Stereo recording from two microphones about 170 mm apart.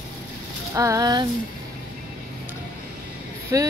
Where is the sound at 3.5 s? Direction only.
20° right (ahead or behind).